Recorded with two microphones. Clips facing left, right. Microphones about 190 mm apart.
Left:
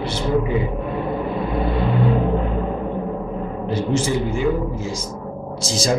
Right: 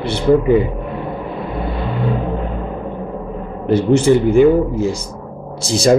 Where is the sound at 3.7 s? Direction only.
60° right (ahead or behind).